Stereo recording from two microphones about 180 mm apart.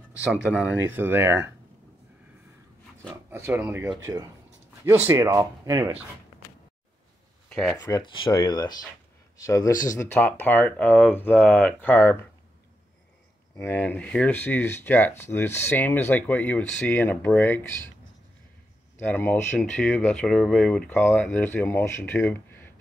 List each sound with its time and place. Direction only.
0.3 s speech: 10° right (ahead or behind)
3.3 s speech: 10° right (ahead or behind)
7.4 s a sound: 5° left (ahead or behind)
8.0 s speech: 25° left (ahead or behind)
13.6 s speech: 10° left (ahead or behind)
18.9 s speech: 10° left (ahead or behind)